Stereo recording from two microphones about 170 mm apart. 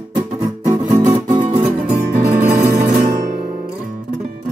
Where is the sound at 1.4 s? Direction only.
40° right (ahead or behind).